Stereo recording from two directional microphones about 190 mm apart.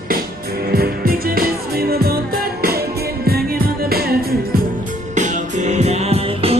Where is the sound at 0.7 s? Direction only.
55° right (ahead or behind).